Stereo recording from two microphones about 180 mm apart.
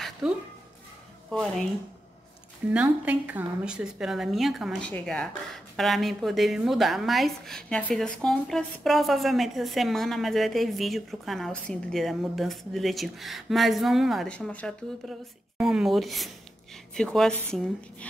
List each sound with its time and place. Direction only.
0.2 s a woman's voice: 5° right (ahead or behind)
2.7 s a woman's voice: 10° right (ahead or behind)